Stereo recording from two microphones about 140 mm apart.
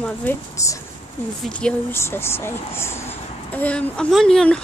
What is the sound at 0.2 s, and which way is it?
Speech, 20° left (ahead or behind).